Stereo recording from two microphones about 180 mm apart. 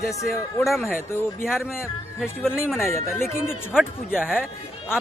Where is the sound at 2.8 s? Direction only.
15° left (ahead or behind).